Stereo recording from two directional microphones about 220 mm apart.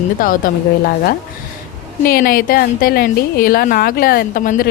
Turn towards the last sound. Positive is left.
turn(degrees=40)  # may be behind; listen again after turning